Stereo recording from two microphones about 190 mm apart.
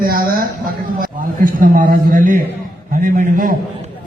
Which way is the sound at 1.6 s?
45° right (ahead or behind).